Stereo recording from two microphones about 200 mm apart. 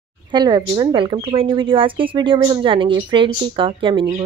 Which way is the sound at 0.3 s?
20° right (ahead or behind).